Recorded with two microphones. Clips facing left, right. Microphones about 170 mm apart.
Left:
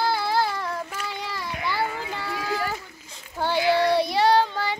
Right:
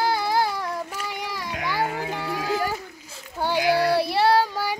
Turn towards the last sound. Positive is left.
turn(degrees=-10)  # may be behind; listen again after turning